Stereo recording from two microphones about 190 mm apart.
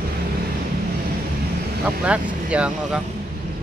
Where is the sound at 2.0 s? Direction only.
5° right (ahead or behind).